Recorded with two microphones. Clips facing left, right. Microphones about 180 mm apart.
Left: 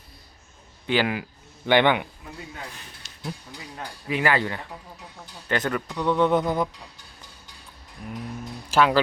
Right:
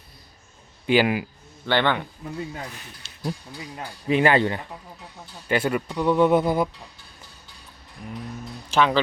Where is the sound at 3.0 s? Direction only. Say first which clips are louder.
Even; 30° right (ahead or behind).